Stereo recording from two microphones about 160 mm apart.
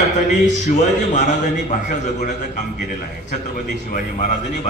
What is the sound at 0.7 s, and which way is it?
A man's voice, 50° left (ahead or behind).